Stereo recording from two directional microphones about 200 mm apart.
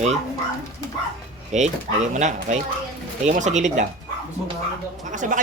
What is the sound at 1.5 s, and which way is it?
Speech, 35° right (ahead or behind).